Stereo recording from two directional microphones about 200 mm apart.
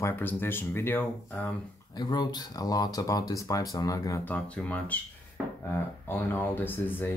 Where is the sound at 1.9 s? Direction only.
20° left (ahead or behind).